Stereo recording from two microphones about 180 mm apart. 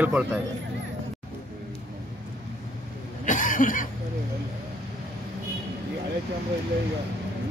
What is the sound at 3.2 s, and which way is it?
Cough, 45° left (ahead or behind).